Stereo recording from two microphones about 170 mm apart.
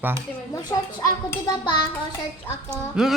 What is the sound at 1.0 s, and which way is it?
Hands, 20° left (ahead or behind).